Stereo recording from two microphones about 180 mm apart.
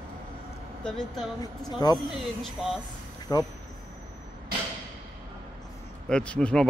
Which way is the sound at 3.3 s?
15° left (ahead or behind).